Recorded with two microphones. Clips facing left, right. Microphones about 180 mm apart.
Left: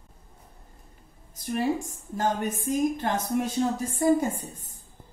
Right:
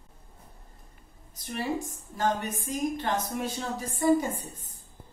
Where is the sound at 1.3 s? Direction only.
45° left (ahead or behind).